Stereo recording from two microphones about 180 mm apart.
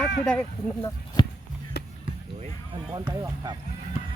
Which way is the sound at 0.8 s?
30° left (ahead or behind).